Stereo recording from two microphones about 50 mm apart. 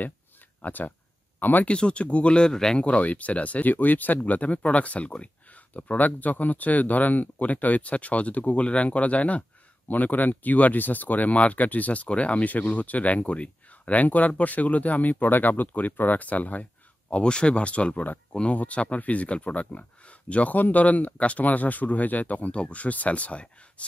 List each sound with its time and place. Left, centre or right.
0.6 s speech: left
1.7 s speech: left
2.8 s speech: left
17.1 s speech: centre